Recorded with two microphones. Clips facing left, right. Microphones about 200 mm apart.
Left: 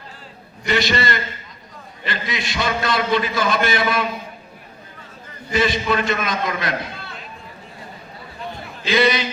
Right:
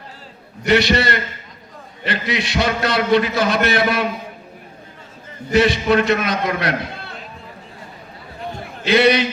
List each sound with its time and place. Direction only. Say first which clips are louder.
0.6 s a man's voice: right 5 dB; 65° right (ahead or behind)
5.5 s a man's voice: right 5 dB; 65° right (ahead or behind)
8.5 s a sound: right 3 dB; 60° right (ahead or behind)